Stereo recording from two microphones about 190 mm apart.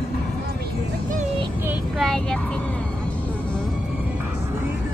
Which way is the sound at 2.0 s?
5° left (ahead or behind).